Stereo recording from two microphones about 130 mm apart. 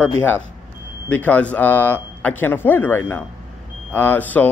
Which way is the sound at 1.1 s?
10° left (ahead or behind).